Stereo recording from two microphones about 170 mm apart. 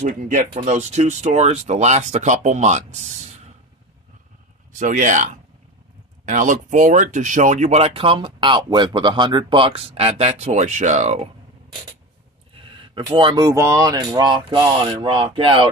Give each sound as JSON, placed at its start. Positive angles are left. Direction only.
{"t": 0.0, "sound": "speech", "side_deg": -45}
{"t": 4.7, "sound": "speech", "side_deg": -50}
{"t": 12.9, "sound": "speech", "side_deg": -30}